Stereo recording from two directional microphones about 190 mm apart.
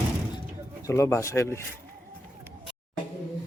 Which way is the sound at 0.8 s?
15° left (ahead or behind).